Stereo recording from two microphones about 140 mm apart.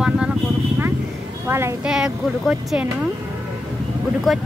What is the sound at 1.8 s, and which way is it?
Speech, 5° right (ahead or behind).